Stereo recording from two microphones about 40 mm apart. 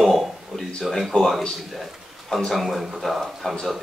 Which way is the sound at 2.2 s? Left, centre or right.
Centre.